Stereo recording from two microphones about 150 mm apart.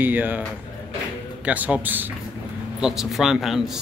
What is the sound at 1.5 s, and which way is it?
A man's voice, 10° right (ahead or behind).